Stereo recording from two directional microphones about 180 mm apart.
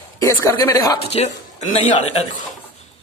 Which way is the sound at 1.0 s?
35° left (ahead or behind).